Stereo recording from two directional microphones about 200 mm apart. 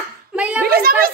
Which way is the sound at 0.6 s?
50° right (ahead or behind).